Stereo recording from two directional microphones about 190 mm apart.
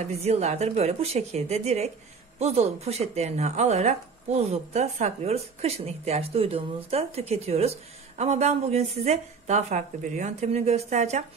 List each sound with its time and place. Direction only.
0.0 s speech: 35° right (ahead or behind)